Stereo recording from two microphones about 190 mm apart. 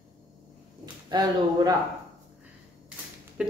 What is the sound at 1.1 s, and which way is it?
Speech, 20° right (ahead or behind).